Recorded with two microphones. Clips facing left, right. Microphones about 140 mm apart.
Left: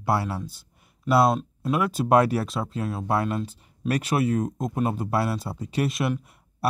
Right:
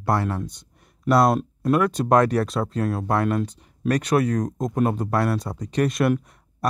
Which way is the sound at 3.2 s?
55° right (ahead or behind).